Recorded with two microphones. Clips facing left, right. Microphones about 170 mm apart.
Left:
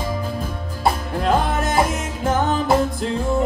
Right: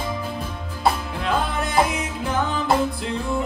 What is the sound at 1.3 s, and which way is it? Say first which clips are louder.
Music: left 4 dB; 45° left (ahead or behind).